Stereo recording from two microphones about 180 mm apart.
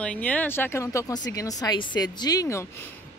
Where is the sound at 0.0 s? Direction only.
5° left (ahead or behind).